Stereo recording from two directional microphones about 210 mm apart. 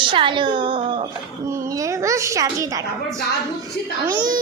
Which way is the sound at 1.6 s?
15° right (ahead or behind).